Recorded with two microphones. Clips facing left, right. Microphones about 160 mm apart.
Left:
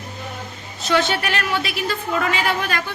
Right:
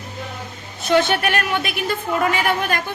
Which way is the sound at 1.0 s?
55° right (ahead or behind).